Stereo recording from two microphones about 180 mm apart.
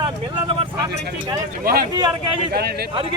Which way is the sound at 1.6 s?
55° right (ahead or behind).